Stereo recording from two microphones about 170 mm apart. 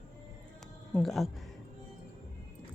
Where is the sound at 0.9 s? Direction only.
Centre (ahead or behind).